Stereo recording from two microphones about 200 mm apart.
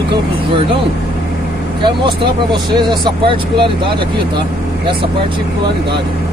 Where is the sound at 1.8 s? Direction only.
25° right (ahead or behind).